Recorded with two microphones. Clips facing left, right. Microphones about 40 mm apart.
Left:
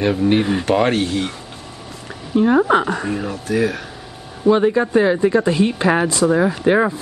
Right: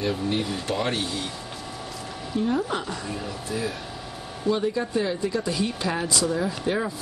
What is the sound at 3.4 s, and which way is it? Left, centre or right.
Speech, left.